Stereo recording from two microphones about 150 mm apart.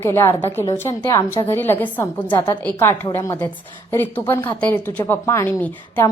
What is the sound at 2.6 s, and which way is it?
A woman's voice, 15° left (ahead or behind).